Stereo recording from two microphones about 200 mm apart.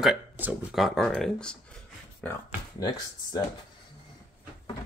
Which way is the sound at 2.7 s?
20° left (ahead or behind).